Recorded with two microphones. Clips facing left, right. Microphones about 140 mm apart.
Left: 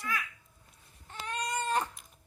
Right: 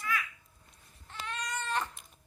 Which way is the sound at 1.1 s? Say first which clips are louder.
Left 3 dB; 40° left (ahead or behind).